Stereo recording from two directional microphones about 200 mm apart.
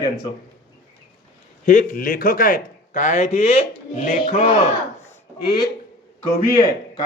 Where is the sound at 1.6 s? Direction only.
40° left (ahead or behind).